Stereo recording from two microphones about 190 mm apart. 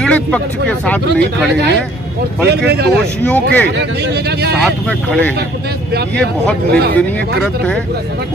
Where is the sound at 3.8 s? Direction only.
60° right (ahead or behind).